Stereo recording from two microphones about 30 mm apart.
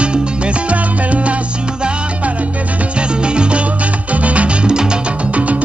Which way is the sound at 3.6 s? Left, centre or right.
Right.